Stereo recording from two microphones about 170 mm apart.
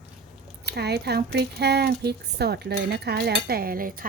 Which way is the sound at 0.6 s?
75° right (ahead or behind).